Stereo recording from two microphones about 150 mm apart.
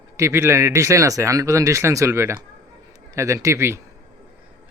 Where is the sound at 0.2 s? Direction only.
20° right (ahead or behind).